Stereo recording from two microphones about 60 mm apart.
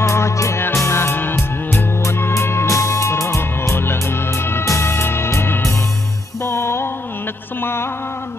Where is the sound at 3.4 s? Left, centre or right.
Left.